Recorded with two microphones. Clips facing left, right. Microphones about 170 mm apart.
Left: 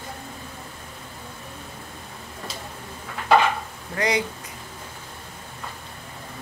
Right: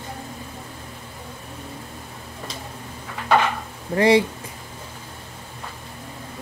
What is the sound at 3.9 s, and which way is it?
Speech, 30° right (ahead or behind).